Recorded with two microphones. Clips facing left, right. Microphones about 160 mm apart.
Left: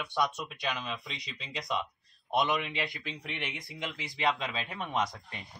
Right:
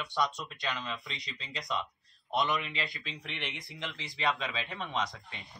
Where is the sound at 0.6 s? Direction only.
15° left (ahead or behind).